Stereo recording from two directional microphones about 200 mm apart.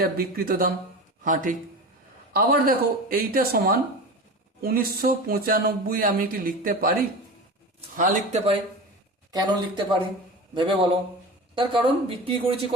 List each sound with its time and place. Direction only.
0.0 s speech: 50° right (ahead or behind)
7.8 s speech: 35° right (ahead or behind)
9.3 s speech: 20° right (ahead or behind)